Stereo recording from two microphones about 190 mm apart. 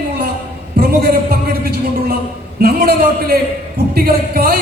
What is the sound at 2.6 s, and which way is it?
A man's voice, 55° right (ahead or behind).